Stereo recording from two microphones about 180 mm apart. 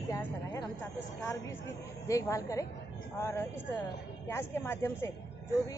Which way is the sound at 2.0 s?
15° left (ahead or behind).